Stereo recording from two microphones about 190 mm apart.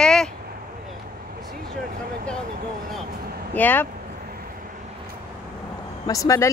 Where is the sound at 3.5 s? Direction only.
10° left (ahead or behind).